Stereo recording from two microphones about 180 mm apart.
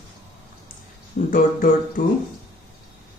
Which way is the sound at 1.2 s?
55° left (ahead or behind).